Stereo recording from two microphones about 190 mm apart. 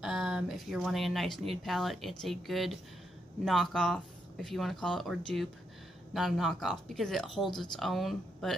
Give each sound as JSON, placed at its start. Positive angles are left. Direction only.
{"t": 0.0, "sound": "speech", "side_deg": -5}